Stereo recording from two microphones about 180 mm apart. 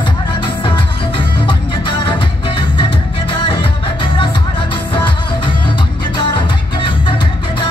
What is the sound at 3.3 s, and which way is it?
Music, 30° left (ahead or behind).